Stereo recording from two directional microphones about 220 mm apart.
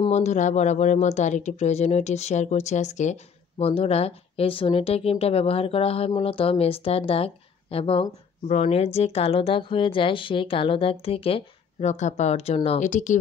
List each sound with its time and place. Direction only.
0.0 s speech: 30° left (ahead or behind)